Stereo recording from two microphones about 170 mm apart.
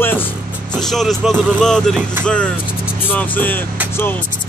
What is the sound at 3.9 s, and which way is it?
Speech, 10° left (ahead or behind).